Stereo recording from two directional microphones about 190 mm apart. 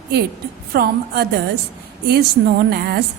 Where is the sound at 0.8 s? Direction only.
55° right (ahead or behind).